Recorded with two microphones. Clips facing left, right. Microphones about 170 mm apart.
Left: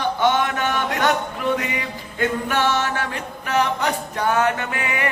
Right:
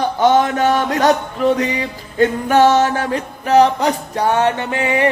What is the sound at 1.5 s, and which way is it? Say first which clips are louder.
Music: right 6 dB; 35° right (ahead or behind).